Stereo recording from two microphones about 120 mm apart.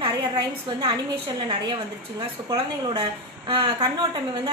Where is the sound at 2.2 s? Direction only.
40° right (ahead or behind).